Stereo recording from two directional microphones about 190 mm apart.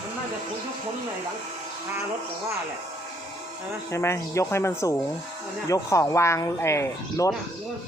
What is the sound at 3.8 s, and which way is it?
Speech, 15° left (ahead or behind).